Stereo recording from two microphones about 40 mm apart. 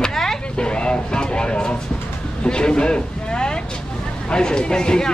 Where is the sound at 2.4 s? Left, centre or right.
Left.